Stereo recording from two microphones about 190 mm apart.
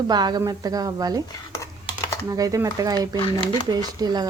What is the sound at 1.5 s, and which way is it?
Computer keyboard, 15° left (ahead or behind).